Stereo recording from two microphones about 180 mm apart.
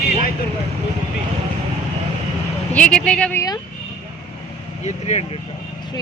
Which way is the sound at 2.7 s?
5° left (ahead or behind).